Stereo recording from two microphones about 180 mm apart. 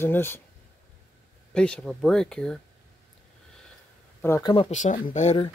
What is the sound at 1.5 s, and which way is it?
Speech, 5° left (ahead or behind).